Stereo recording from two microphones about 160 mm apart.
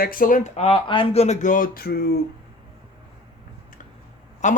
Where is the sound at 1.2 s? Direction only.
50° left (ahead or behind); by 2.2 s 75° left (ahead or behind).